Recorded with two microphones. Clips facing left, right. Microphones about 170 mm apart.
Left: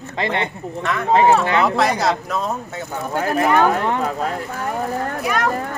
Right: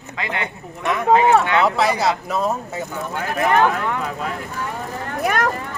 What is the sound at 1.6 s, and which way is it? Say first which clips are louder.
Speech: even; centre (ahead or behind).